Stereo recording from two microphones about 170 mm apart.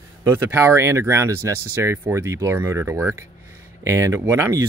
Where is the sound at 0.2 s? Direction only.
15° right (ahead or behind).